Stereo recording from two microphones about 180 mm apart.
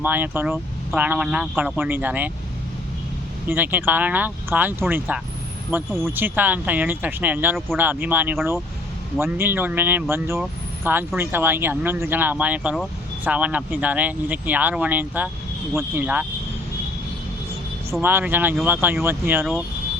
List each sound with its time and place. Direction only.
0.0 s speech: 10° right (ahead or behind)
3.5 s speech: 10° right (ahead or behind)
7.7 s speech: centre (ahead or behind)
8.0 s speech: 10° right (ahead or behind)
18.0 s speech: 10° right (ahead or behind)